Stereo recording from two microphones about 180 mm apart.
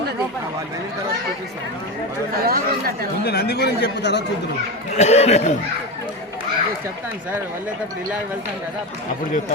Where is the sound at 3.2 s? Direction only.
65° left (ahead or behind).